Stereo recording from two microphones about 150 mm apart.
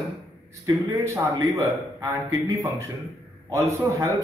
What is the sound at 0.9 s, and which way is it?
A man's voice, 25° right (ahead or behind).